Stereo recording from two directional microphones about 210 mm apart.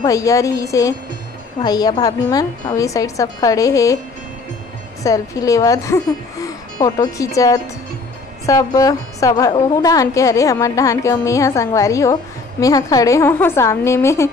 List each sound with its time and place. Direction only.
0.0 s a woman's voice: 15° left (ahead or behind)
5.0 s a woman's voice: 15° left (ahead or behind)